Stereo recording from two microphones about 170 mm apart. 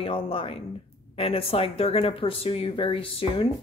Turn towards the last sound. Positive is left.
turn(degrees=30)  # may be behind; listen again after turning